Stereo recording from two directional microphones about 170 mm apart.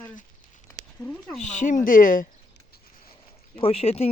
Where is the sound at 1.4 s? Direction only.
45° left (ahead or behind).